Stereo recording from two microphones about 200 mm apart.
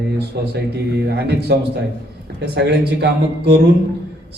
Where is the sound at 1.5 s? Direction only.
55° right (ahead or behind).